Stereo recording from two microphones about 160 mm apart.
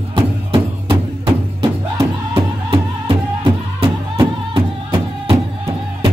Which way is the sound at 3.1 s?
25° right (ahead or behind).